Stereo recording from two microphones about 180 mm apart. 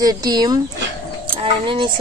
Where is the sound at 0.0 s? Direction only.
20° right (ahead or behind).